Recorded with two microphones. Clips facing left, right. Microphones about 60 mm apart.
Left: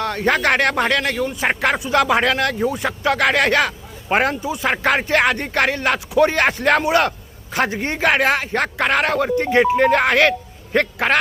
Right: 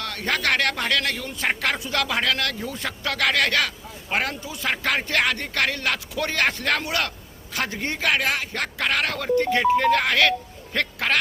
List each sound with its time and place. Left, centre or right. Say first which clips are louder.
0.0 s speech: left 7 dB; left